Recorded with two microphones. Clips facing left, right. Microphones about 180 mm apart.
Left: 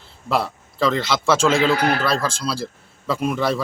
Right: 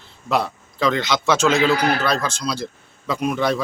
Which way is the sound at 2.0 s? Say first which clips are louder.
Even; 5° left (ahead or behind).